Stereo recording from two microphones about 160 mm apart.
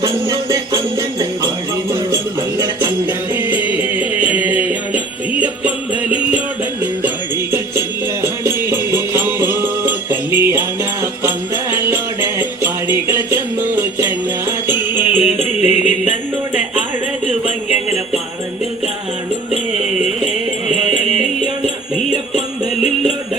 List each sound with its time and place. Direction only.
0.0 s jingle bell: 20° right (ahead or behind)
3.5 s music: 10° right (ahead or behind)
7.5 s music: 15° right (ahead or behind)
15.1 s music: 45° left (ahead or behind)
20.7 s music: 5° right (ahead or behind)